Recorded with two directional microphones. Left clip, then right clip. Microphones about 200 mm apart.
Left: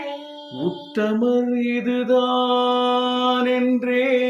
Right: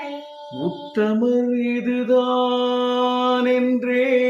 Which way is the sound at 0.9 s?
Centre (ahead or behind).